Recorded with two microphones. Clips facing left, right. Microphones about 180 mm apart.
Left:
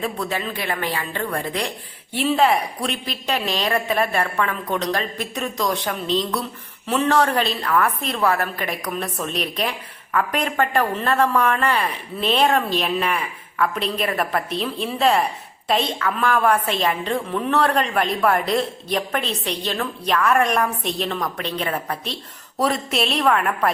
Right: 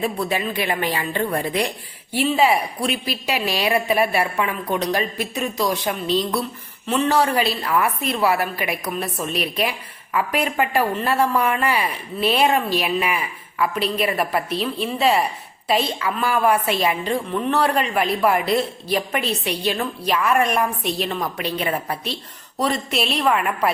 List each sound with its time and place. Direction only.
0.0 s a woman's voice: 15° right (ahead or behind)
2.1 s a woman's voice: centre (ahead or behind)